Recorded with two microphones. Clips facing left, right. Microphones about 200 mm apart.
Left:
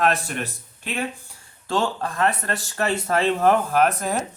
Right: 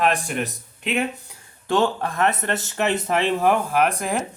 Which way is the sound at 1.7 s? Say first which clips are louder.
Right 3 dB; 20° right (ahead or behind).